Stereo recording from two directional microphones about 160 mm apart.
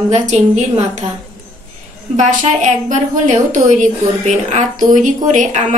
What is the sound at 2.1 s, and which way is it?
A woman's voice, 50° right (ahead or behind).